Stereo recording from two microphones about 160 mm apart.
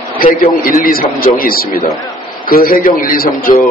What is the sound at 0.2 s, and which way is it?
A man's voice, 60° left (ahead or behind).